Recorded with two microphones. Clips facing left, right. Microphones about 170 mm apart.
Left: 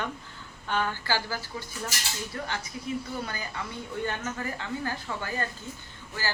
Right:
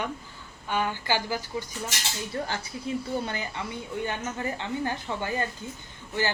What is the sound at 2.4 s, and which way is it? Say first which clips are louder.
Speech: right 2 dB; 35° right (ahead or behind).